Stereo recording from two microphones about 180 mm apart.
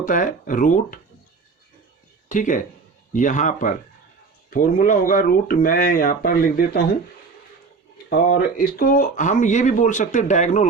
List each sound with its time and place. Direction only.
0.0 s speech: 45° left (ahead or behind)
2.3 s speech: 45° left (ahead or behind)
8.1 s speech: 60° left (ahead or behind); by 10.7 s 40° left (ahead or behind)